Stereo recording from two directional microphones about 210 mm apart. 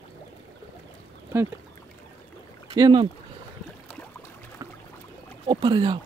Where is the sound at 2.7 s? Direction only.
20° right (ahead or behind).